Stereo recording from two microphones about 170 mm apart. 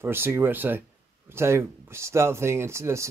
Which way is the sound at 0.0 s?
15° right (ahead or behind).